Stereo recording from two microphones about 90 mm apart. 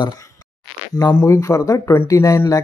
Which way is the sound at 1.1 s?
30° left (ahead or behind).